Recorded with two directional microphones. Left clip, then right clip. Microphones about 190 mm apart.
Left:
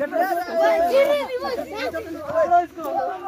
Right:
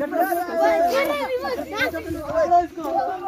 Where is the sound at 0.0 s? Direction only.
15° left (ahead or behind).